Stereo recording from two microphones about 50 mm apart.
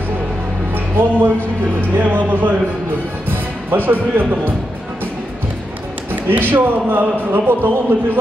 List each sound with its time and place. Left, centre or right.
0.7 s a man's voice: right
6.3 s a man's voice: right